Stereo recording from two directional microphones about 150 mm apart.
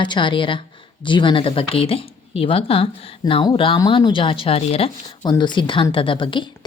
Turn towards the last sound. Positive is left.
turn(degrees=35)  # may be behind; listen again after turning